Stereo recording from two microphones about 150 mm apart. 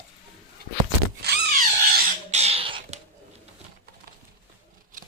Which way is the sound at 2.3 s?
45° right (ahead or behind).